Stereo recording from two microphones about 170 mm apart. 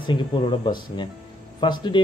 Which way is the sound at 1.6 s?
25° left (ahead or behind).